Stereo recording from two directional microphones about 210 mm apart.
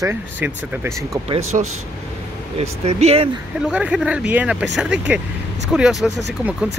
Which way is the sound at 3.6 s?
5° right (ahead or behind).